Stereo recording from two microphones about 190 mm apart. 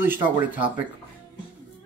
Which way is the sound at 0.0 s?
10° right (ahead or behind).